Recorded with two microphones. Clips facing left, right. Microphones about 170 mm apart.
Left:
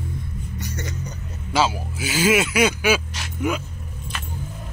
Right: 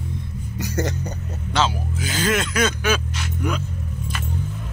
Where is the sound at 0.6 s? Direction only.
70° right (ahead or behind).